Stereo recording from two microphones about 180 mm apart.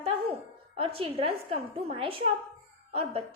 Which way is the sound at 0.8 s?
30° right (ahead or behind).